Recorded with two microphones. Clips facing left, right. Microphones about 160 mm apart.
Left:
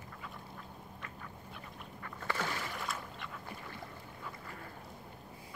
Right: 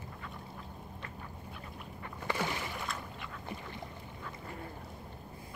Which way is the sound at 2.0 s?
15° right (ahead or behind).